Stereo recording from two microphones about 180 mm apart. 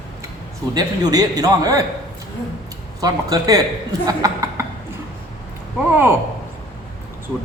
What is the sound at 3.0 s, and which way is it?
A man's voice, 20° right (ahead or behind).